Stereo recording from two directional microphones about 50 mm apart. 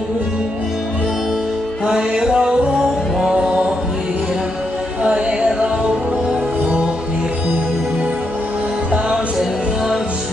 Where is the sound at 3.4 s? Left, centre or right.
Right.